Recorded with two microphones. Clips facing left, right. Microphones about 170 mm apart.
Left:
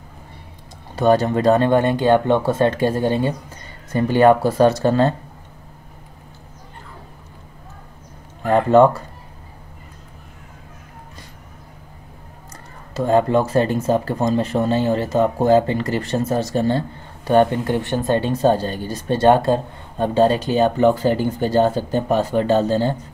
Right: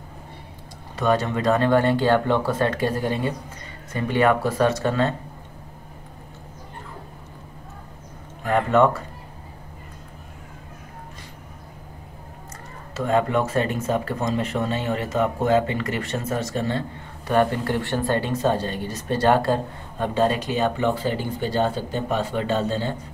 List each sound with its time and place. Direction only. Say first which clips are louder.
0.9 s speech: left 6 dB; 35° left (ahead or behind)
8.5 s speech: left 6 dB; 35° left (ahead or behind)
12.9 s speech: left 5 dB; 35° left (ahead or behind)